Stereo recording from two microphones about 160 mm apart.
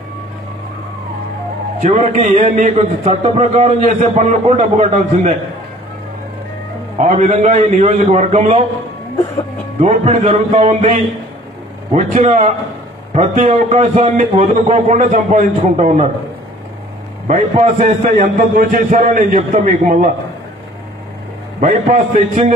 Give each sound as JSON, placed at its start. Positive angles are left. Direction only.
{"t": 1.8, "sound": "a man's voice", "side_deg": -50}
{"t": 7.0, "sound": "a man's voice", "side_deg": -50}
{"t": 9.8, "sound": "a man's voice", "side_deg": -45}
{"t": 17.3, "sound": "a man's voice", "side_deg": -50}
{"t": 21.5, "sound": "a man's voice", "side_deg": -50}